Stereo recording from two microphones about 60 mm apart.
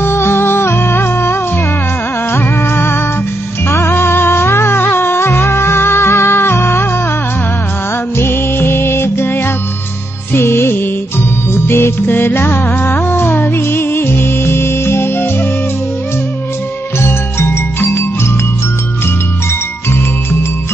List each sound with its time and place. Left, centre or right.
0.0 s music: left
8.2 s music: left
17.0 s music: left